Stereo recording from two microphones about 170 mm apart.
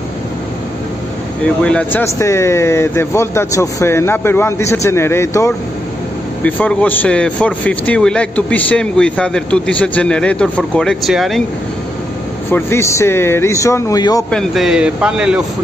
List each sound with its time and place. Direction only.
1.4 s a man's voice: 5° left (ahead or behind)
12.4 s a man's voice: 15° left (ahead or behind)
14.3 s speech: centre (ahead or behind)